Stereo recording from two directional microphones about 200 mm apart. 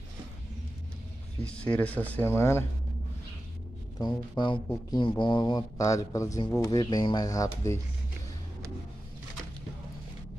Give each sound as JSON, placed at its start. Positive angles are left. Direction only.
{"t": 1.4, "sound": "speech", "side_deg": 5}
{"t": 4.0, "sound": "speech", "side_deg": 25}